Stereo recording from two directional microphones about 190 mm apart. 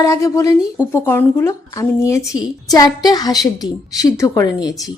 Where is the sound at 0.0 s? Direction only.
15° left (ahead or behind).